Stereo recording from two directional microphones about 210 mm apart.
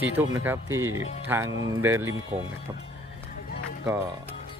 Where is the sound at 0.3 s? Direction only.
10° right (ahead or behind).